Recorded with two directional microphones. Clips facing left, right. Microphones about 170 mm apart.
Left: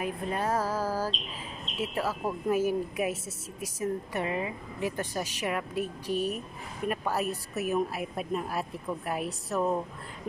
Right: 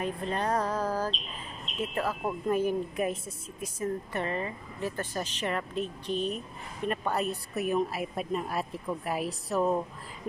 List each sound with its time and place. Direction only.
0.0 s a woman's voice: 10° left (ahead or behind)